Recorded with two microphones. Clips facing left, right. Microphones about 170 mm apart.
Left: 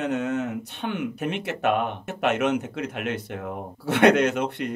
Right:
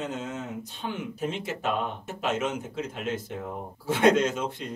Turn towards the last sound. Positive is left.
turn(degrees=65)  # may be behind; listen again after turning